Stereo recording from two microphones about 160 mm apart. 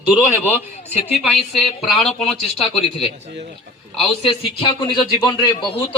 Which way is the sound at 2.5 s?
40° left (ahead or behind).